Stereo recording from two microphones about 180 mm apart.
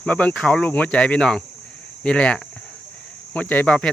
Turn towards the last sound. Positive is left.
turn(degrees=5)  # may be behind; listen again after turning